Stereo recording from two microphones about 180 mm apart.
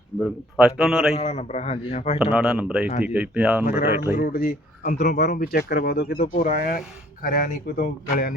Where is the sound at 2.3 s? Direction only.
5° right (ahead or behind).